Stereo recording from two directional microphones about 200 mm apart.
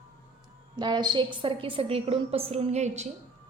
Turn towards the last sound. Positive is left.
turn(degrees=-35)  # may be behind; listen again after turning